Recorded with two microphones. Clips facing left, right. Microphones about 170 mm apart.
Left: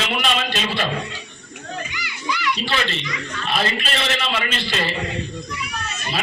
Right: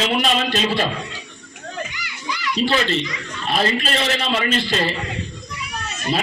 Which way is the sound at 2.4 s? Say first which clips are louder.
Right 5 dB; 40° right (ahead or behind).